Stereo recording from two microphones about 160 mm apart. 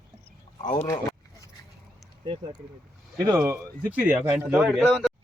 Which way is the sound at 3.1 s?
25° right (ahead or behind).